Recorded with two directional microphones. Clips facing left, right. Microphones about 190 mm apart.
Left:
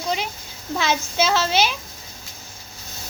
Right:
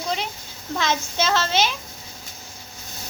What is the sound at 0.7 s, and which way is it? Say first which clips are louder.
Speech: left 2 dB; 10° left (ahead or behind).